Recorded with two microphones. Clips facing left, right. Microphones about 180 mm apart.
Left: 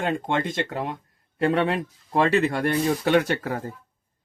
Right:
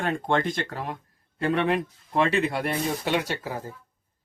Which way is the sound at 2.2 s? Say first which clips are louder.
Left 3 dB; 40° left (ahead or behind).